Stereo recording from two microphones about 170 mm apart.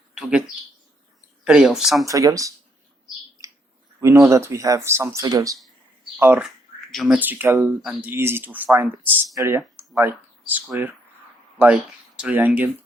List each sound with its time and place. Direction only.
0.1 s bird: 5° right (ahead or behind)
1.5 s speech: 5° right (ahead or behind)
2.0 s speech: 20° right (ahead or behind)
4.0 s speech: 15° right (ahead or behind)